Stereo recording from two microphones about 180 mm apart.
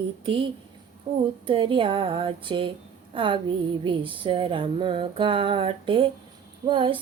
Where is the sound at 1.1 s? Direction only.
30° right (ahead or behind).